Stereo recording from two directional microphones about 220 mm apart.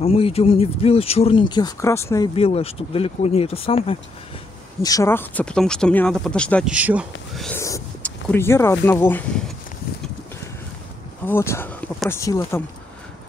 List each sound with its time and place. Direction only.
0.0 s speech: 25° left (ahead or behind)
2.3 s speech: 25° left (ahead or behind)
4.8 s speech: 15° left (ahead or behind)
6.7 s speech: 5° right (ahead or behind)
7.5 s speech: 10° left (ahead or behind)
11.2 s speech: 10° left (ahead or behind)